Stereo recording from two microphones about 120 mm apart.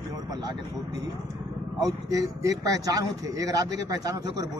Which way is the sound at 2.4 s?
30° right (ahead or behind).